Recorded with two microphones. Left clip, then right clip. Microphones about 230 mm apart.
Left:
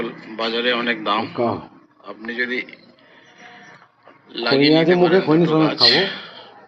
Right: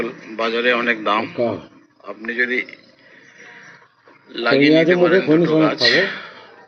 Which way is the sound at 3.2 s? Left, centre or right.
Centre.